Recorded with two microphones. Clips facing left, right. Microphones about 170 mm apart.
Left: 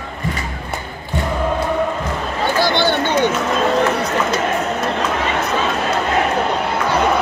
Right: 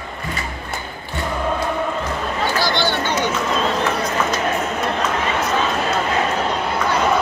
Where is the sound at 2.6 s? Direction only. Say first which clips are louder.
Left 6 dB; 55° left (ahead or behind).